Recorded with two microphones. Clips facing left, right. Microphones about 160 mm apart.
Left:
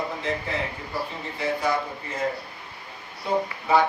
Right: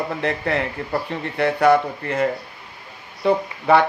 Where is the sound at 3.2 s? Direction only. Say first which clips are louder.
Right 7 dB; 65° right (ahead or behind).